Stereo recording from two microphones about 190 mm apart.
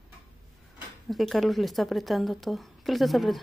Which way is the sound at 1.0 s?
Centre (ahead or behind).